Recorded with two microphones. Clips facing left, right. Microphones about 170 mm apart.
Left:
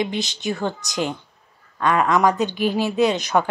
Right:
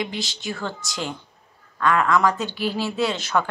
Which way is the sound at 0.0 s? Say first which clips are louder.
Left 5 dB; 20° left (ahead or behind).